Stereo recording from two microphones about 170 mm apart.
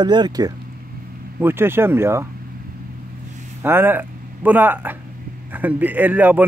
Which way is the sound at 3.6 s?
10° right (ahead or behind).